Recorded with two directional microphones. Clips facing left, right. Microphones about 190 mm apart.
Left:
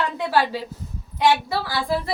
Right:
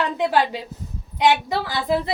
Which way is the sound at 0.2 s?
15° right (ahead or behind).